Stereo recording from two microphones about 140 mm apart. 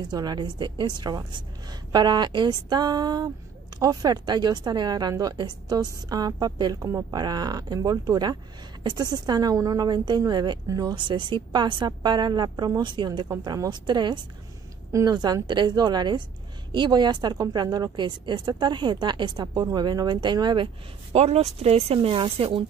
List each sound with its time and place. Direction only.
0.0 s a woman's voice: 30° right (ahead or behind)